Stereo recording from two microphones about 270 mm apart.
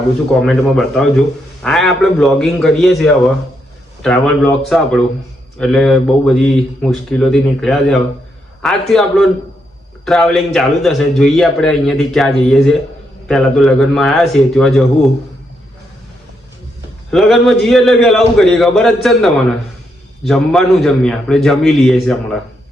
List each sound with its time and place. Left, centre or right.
0.4 s a man's voice: centre
17.1 s a man's voice: centre